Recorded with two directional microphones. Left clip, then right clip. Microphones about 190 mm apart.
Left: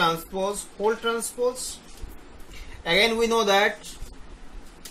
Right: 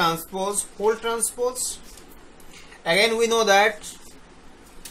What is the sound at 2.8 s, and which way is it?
Speech, 15° right (ahead or behind).